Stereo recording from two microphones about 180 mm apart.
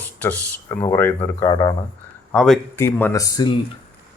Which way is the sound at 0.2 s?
10° left (ahead or behind).